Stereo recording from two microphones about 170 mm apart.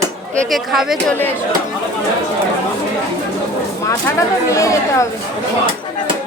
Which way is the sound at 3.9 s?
15° left (ahead or behind).